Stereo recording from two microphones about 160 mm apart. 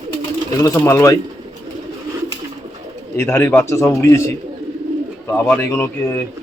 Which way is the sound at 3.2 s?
15° left (ahead or behind).